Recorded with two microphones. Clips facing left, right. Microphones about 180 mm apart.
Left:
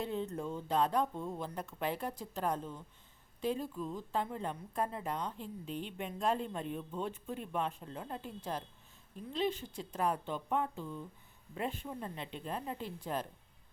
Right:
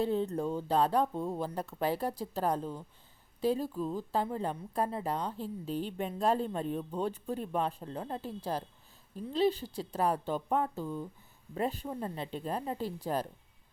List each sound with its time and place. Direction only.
0.0 s a woman's voice: 35° right (ahead or behind)